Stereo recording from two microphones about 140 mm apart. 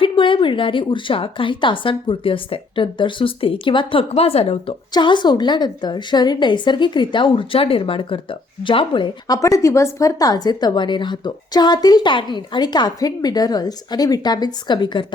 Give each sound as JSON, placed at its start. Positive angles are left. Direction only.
{"t": 0.0, "sound": "a woman's voice", "side_deg": 35}
{"t": 4.9, "sound": "a woman's voice", "side_deg": 35}